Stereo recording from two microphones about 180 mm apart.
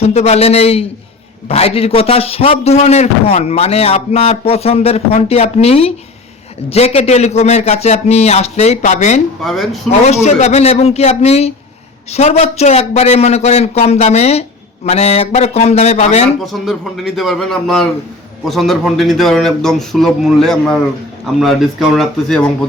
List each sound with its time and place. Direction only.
0.0 s a man's voice: 35° left (ahead or behind)
9.4 s speech: centre (ahead or behind)
10.2 s a man's voice: 40° left (ahead or behind)
16.4 s speech: centre (ahead or behind)